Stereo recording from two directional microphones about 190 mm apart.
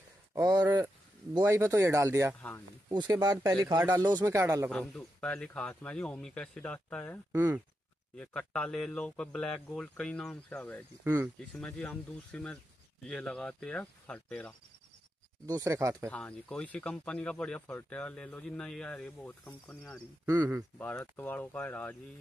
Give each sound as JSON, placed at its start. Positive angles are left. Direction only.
{"t": 0.3, "sound": "speech", "side_deg": -20}
{"t": 4.6, "sound": "speech", "side_deg": 5}
{"t": 7.3, "sound": "speech", "side_deg": -10}
{"t": 8.2, "sound": "speech", "side_deg": 5}
{"t": 15.4, "sound": "speech", "side_deg": -20}
{"t": 16.1, "sound": "speech", "side_deg": 5}
{"t": 20.2, "sound": "speech", "side_deg": -15}
{"t": 20.7, "sound": "speech", "side_deg": 10}